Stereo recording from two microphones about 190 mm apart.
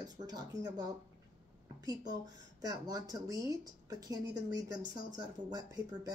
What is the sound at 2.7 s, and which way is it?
Speech, 20° right (ahead or behind).